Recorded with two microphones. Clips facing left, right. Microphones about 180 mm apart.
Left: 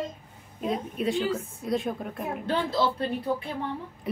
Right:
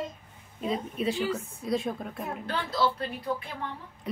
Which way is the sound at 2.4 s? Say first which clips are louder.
Left 7 dB; 25° left (ahead or behind).